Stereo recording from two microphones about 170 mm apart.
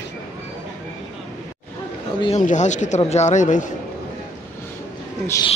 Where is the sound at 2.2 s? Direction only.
45° left (ahead or behind).